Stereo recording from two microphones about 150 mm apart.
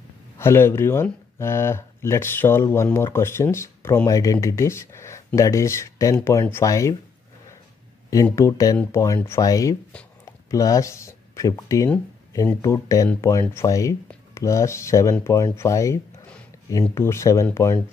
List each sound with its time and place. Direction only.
0.4 s speech: 15° left (ahead or behind)
8.1 s speech: 20° left (ahead or behind)